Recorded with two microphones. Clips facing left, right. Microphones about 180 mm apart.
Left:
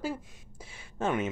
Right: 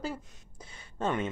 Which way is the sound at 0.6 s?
5° left (ahead or behind).